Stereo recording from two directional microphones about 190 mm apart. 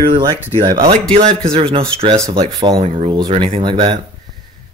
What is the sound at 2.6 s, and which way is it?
Speech, 25° right (ahead or behind).